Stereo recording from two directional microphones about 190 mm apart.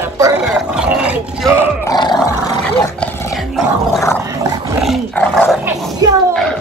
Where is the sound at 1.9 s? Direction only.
20° left (ahead or behind).